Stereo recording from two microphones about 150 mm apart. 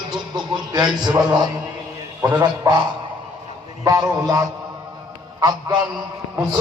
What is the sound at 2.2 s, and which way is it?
Speech, 25° right (ahead or behind).